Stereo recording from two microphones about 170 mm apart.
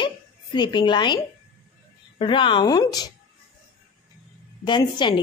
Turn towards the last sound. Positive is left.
turn(degrees=25)  # may be behind; listen again after turning